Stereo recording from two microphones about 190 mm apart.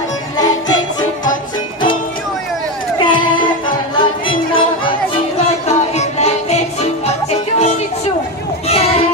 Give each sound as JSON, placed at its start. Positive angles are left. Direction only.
{"t": 3.1, "sound": "music", "side_deg": 25}
{"t": 5.7, "sound": "music", "side_deg": 35}
{"t": 8.6, "sound": "a sound", "side_deg": 30}